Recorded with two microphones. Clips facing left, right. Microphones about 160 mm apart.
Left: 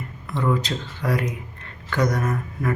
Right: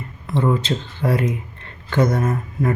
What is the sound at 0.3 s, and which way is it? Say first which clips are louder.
Speech: right 4 dB; 30° right (ahead or behind).